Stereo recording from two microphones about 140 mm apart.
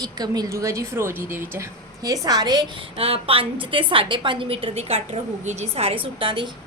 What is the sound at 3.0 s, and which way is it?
A woman's voice, 40° right (ahead or behind).